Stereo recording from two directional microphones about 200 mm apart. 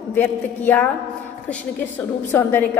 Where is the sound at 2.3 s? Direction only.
10° left (ahead or behind).